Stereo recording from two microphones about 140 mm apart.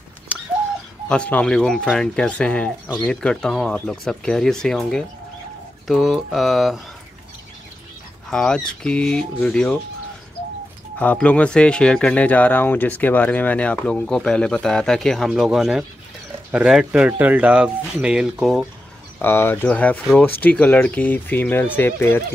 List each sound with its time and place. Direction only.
0.3 s bird: 10° right (ahead or behind)
1.0 s speech: 10° left (ahead or behind)
8.3 s speech: 5° left (ahead or behind)
11.0 s speech: 10° left (ahead or behind)
19.1 s speech: 15° left (ahead or behind)